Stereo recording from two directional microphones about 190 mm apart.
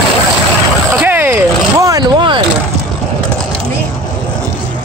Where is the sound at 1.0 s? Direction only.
10° right (ahead or behind); by 2.4 s 25° right (ahead or behind).